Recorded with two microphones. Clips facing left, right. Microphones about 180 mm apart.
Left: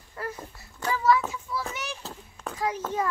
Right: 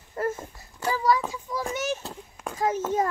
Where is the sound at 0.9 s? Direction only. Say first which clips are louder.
Left 1 dB; 40° right (ahead or behind).